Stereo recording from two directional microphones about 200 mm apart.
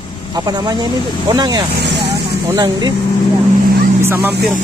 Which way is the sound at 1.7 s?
55° right (ahead or behind).